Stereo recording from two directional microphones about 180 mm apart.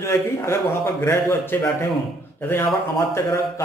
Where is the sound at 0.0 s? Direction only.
15° left (ahead or behind).